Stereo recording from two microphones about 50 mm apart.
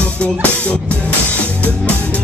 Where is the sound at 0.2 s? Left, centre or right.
Left.